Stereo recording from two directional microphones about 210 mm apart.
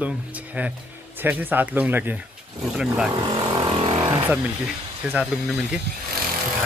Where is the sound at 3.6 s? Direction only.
25° right (ahead or behind).